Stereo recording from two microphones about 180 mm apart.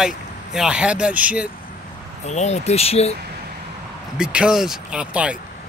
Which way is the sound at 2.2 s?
40° left (ahead or behind).